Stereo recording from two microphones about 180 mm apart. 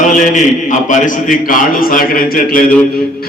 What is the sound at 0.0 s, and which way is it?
A man's voice, 45° left (ahead or behind).